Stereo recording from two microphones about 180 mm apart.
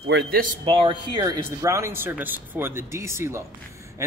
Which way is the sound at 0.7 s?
30° right (ahead or behind).